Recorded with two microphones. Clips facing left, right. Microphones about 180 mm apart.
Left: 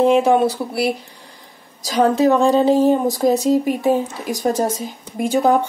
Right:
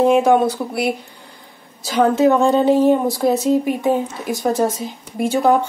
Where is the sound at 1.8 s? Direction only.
35° left (ahead or behind).